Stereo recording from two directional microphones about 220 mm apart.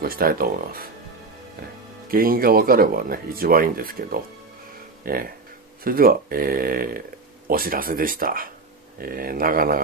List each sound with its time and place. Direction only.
0.0 s speech: 40° right (ahead or behind)
2.0 s speech: 40° right (ahead or behind)